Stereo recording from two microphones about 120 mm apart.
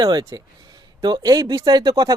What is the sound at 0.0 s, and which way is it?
Speech, 30° right (ahead or behind).